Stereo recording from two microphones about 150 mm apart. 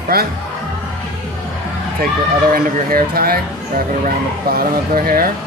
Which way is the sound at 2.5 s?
80° right.